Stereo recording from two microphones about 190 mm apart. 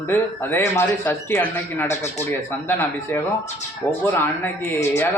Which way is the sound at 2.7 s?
10° left (ahead or behind).